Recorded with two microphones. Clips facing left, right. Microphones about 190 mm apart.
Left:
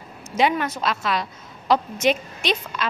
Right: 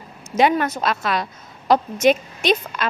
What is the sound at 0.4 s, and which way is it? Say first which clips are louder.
A woman's voice: right 3 dB; 45° right (ahead or behind).